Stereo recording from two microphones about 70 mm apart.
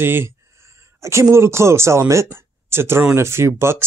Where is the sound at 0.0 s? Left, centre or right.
Right.